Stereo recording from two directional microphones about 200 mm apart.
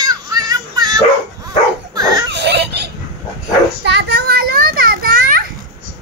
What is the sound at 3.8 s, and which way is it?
Children playing, 55° right (ahead or behind).